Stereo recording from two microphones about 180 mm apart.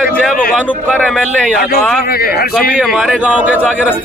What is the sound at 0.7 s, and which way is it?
Speech, 10° left (ahead or behind).